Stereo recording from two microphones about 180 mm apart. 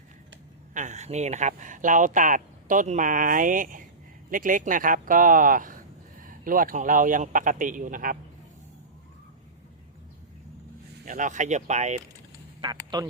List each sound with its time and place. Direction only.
0.7 s speech: 40° right (ahead or behind)
11.0 s speech: 45° right (ahead or behind)
12.6 s speech: 25° right (ahead or behind)